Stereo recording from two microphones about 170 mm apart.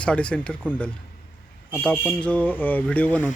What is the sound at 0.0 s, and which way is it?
Speech, 5° left (ahead or behind).